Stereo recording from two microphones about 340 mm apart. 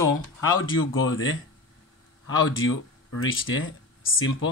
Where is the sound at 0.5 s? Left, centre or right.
Left.